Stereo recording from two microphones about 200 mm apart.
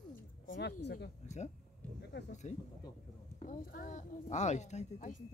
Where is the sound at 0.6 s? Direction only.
60° left (ahead or behind).